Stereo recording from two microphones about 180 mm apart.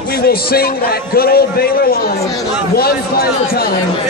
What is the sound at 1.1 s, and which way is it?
Speech, 55° left (ahead or behind).